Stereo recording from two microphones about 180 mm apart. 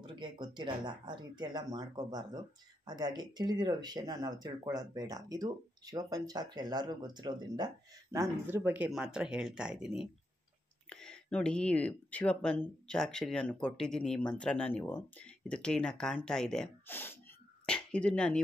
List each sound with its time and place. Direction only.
0.0 s speech: 25° right (ahead or behind); by 18.4 s 5° left (ahead or behind)